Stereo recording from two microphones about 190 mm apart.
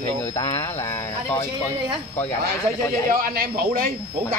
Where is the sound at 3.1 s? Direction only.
50° right (ahead or behind).